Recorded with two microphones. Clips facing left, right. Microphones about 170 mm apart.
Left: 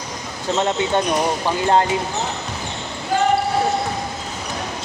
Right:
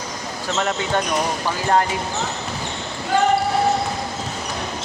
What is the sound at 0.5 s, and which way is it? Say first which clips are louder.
Speech: left 3 dB; 20° left (ahead or behind).